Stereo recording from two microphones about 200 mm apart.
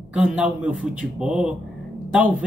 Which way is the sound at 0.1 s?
5° right (ahead or behind).